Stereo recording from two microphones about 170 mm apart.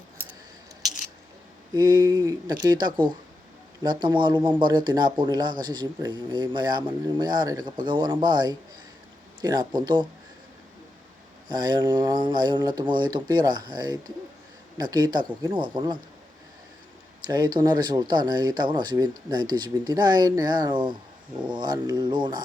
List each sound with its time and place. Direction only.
1.7 s speech: 25° right (ahead or behind)
11.4 s speech: 25° right (ahead or behind)
17.2 s speech: 25° right (ahead or behind)